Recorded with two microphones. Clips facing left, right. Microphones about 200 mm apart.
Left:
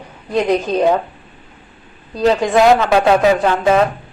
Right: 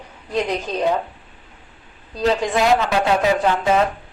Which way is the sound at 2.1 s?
70° left (ahead or behind).